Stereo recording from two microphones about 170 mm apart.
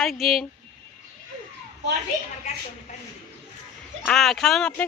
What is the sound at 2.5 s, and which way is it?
Speech, 40° left (ahead or behind).